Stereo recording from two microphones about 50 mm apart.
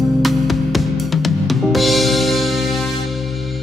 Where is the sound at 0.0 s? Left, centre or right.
Centre.